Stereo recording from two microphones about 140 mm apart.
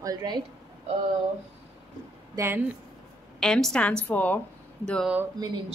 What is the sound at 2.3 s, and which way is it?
Speech, 15° right (ahead or behind).